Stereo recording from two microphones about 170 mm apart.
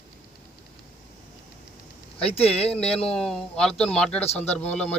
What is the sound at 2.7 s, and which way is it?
Speech, 5° left (ahead or behind).